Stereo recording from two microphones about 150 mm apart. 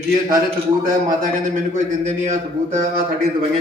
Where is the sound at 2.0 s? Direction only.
55° right (ahead or behind).